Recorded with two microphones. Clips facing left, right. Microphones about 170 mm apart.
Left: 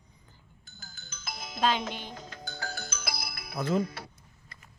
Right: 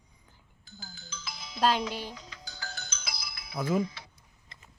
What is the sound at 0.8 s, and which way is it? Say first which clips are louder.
Music: right 5 dB; 50° left (ahead or behind).